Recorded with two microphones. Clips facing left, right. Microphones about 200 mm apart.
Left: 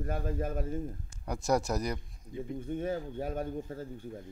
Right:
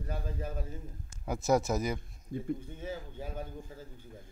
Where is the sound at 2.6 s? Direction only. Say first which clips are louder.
Left 7 dB; 55° left (ahead or behind).